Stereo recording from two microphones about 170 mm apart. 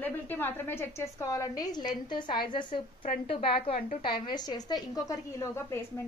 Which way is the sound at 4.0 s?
25° left (ahead or behind).